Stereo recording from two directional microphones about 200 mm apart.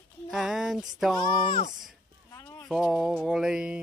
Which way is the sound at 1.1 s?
20° left (ahead or behind).